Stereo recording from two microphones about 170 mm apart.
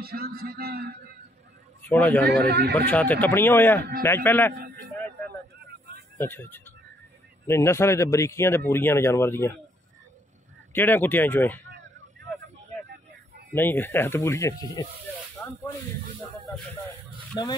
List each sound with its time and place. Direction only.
0.0 s music: 60° right (ahead or behind)
1.8 s a man's voice: 10° left (ahead or behind)
2.4 s speech: 70° right (ahead or behind)
2.7 s speech: 10° left (ahead or behind)
6.1 s speech: 15° left (ahead or behind)
10.7 s speech: 10° left (ahead or behind)
13.5 s speech: 10° left (ahead or behind)
15.4 s snake: 10° left (ahead or behind)
17.3 s speech: 25° left (ahead or behind)